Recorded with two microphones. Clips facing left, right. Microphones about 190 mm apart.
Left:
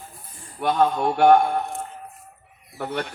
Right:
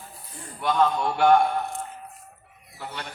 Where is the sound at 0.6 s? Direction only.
55° left (ahead or behind).